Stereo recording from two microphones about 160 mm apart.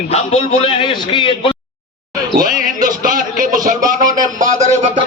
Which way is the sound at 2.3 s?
60° right (ahead or behind).